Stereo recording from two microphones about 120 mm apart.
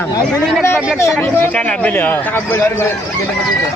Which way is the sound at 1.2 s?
10° left (ahead or behind).